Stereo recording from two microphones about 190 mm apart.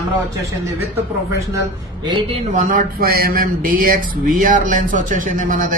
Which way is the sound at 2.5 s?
45° right (ahead or behind).